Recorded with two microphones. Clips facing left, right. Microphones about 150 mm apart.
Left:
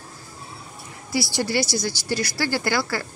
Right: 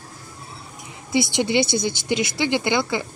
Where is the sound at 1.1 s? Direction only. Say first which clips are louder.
Right 4 dB; 20° right (ahead or behind).